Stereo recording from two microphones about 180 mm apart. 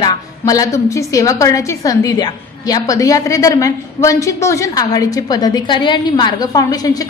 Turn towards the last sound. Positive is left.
turn(degrees=20)  # may be behind; listen again after turning